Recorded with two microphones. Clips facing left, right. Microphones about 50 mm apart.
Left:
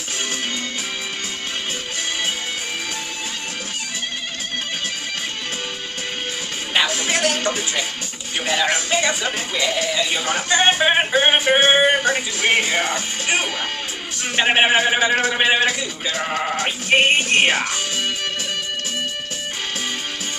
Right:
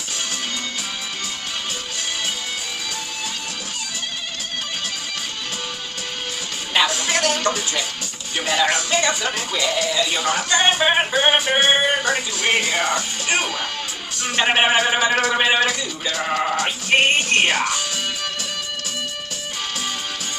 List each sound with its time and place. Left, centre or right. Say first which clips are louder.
6.7 s music: even; centre
7.3 s speech: even; left
11.1 s speech: left 2 dB; left
11.5 s speech: left 3 dB; centre
12.0 s speech: left 1 dB; left
14.4 s speech: left 1 dB; centre
15.6 s speech: left 1 dB; left
17.2 s speech: left 1 dB; left